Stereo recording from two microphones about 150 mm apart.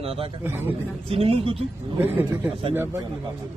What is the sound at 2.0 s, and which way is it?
A man's voice, 15° right (ahead or behind).